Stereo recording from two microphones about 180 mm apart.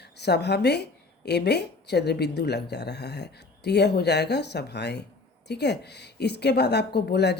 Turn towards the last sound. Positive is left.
turn(degrees=65)  # may be behind; listen again after turning